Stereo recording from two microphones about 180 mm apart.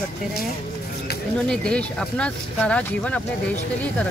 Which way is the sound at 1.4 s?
5° left (ahead or behind).